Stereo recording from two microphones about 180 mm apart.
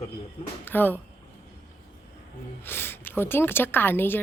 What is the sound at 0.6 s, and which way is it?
Speech, 10° left (ahead or behind).